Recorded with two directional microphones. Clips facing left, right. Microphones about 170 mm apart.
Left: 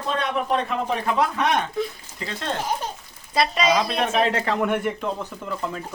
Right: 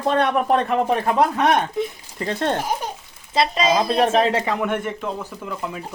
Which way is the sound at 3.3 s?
25° right (ahead or behind).